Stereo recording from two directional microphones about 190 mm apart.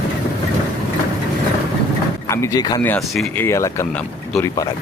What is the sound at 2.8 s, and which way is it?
Speech, 5° left (ahead or behind).